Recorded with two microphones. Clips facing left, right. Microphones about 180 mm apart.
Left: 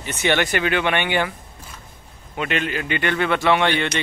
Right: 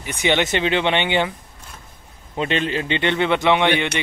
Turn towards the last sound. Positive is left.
turn(degrees=-20)  # may be behind; listen again after turning